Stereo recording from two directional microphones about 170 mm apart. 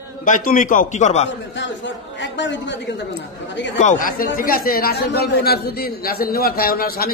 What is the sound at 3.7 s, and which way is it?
Speech, 50° left (ahead or behind).